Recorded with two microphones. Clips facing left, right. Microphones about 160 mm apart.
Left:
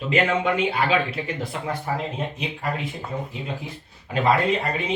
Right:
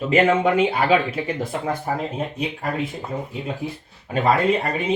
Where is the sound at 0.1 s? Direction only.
45° right (ahead or behind).